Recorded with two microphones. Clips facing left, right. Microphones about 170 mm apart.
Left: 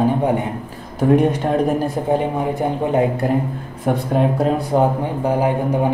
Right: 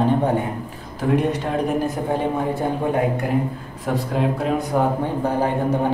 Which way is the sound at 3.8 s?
50° left (ahead or behind).